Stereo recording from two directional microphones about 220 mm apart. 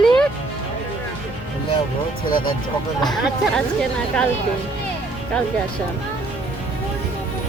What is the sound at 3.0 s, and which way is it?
Speech, centre (ahead or behind).